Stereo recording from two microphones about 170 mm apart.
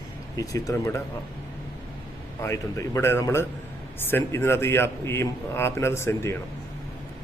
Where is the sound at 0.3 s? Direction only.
20° left (ahead or behind).